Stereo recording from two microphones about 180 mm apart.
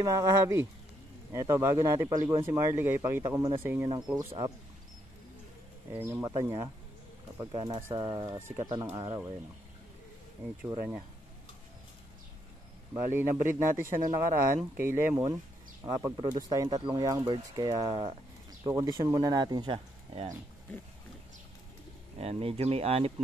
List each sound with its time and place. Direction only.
0.0 s speech: 20° right (ahead or behind)
5.9 s speech: 15° right (ahead or behind)
12.9 s speech: 10° right (ahead or behind); by 20.2 s 30° right (ahead or behind)
22.2 s speech: 35° right (ahead or behind)